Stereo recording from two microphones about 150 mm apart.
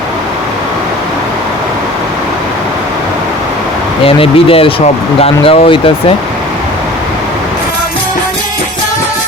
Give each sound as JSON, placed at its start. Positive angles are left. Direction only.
{"t": 4.0, "sound": "speech", "side_deg": 40}